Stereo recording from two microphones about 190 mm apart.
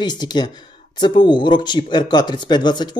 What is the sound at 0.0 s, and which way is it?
Speech, 20° left (ahead or behind).